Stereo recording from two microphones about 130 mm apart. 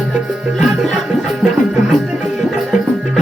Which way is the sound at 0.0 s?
Centre (ahead or behind).